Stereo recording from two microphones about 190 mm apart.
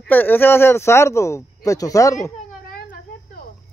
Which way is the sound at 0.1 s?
10° left (ahead or behind).